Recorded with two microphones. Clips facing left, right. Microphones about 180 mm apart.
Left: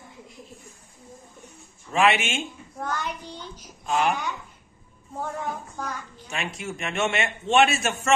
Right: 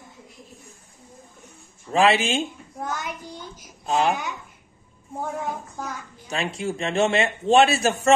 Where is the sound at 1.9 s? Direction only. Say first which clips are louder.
Right 3 dB; 35° right (ahead or behind).